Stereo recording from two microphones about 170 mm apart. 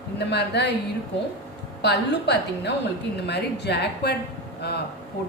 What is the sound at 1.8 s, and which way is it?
A woman's voice, 80° left.